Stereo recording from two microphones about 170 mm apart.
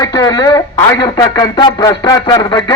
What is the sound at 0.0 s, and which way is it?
A man's voice, 20° left (ahead or behind).